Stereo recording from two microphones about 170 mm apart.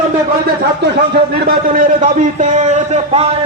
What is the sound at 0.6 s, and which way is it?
Speech, 80° right.